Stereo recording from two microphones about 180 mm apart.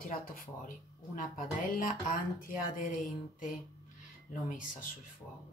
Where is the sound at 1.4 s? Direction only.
50° left (ahead or behind).